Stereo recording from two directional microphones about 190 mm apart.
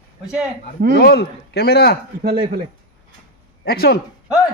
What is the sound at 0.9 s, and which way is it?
A man's voice, 60° left (ahead or behind).